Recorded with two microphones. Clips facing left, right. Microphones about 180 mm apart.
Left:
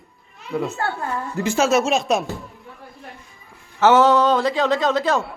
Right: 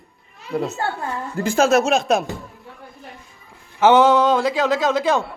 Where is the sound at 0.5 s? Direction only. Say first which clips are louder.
Right 1 dB; 35° right (ahead or behind).